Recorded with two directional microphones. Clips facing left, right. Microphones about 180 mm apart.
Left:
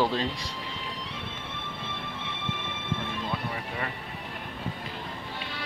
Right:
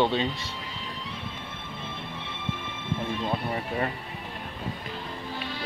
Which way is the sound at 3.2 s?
35° right (ahead or behind).